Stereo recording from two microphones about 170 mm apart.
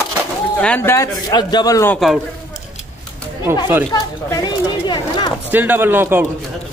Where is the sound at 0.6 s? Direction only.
10° left (ahead or behind).